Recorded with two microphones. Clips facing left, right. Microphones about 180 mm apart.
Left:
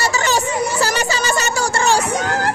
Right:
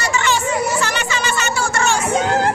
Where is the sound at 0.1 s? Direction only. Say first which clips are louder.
Even; 40° left (ahead or behind).